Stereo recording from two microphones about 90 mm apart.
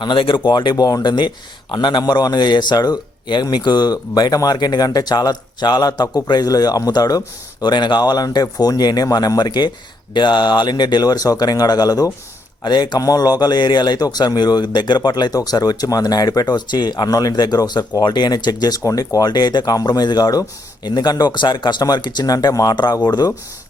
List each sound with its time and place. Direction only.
0.0 s a man's voice: 70° left (ahead or behind); by 23.3 s 50° left (ahead or behind)